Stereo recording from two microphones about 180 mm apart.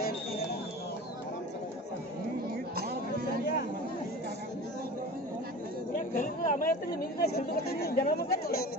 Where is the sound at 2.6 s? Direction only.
60° right (ahead or behind).